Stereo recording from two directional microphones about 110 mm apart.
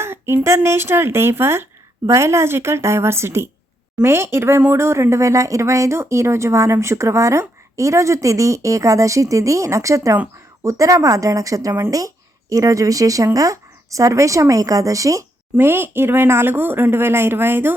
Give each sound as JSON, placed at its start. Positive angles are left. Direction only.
{"t": 0.0, "sound": "speech", "side_deg": -20}